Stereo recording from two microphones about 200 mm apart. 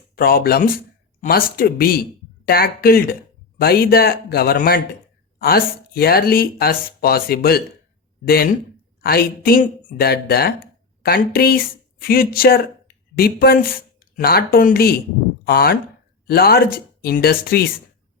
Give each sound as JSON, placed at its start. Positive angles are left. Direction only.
{"t": 0.2, "sound": "speech", "side_deg": 50}